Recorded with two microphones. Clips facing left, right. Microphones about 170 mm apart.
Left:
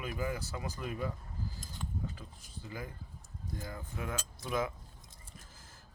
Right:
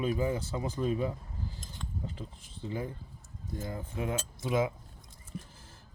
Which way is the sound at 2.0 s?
25° right (ahead or behind).